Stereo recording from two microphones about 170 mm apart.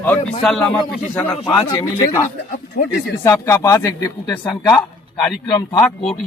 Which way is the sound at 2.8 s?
55° left (ahead or behind).